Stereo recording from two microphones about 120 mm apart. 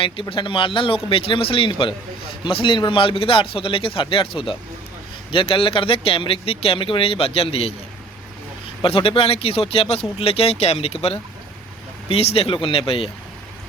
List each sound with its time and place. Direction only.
0.0 s speech: 45° left (ahead or behind)
8.8 s speech: 50° left (ahead or behind)